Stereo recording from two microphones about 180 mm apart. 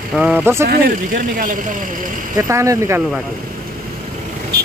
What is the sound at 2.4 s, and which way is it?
Speech, 15° right (ahead or behind).